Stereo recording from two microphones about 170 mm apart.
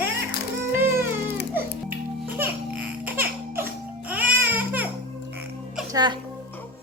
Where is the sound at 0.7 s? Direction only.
15° right (ahead or behind).